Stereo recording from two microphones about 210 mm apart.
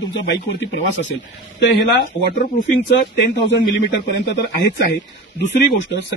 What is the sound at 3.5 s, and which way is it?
Speech, 60° left (ahead or behind).